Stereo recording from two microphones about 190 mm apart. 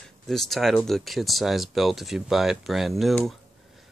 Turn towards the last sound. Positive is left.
turn(degrees=0)  # may be behind; listen again after turning